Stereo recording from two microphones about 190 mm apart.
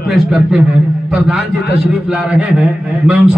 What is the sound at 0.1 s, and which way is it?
Speech, centre (ahead or behind).